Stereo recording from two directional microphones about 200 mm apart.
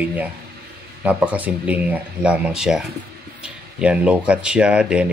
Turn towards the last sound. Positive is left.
turn(degrees=-5)  # may be behind; listen again after turning